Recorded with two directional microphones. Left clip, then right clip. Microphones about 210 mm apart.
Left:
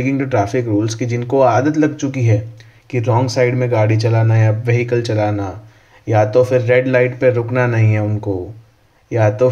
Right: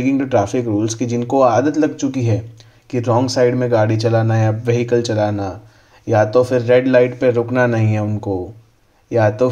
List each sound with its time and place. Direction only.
0.0 s speech: 25° right (ahead or behind)